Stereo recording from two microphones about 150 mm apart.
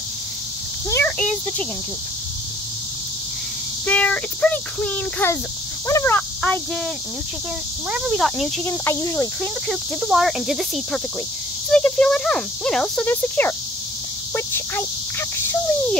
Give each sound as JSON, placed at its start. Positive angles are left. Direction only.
{"t": 0.8, "sound": "a sound", "side_deg": 20}
{"t": 3.8, "sound": "speech", "side_deg": 10}
{"t": 7.9, "sound": "speech", "side_deg": 0}
{"t": 8.6, "sound": "speech", "side_deg": 15}
{"t": 9.4, "sound": "speech", "side_deg": -5}